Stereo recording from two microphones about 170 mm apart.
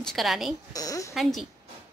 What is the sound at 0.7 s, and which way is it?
Speech, 20° left (ahead or behind).